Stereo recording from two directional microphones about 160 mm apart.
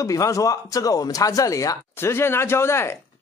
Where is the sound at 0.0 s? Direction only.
20° left (ahead or behind).